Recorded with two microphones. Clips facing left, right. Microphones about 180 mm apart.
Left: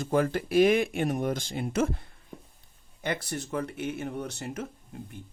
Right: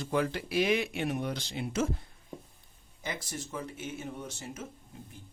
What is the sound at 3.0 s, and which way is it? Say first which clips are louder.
Speech: left 6 dB; 65° left (ahead or behind).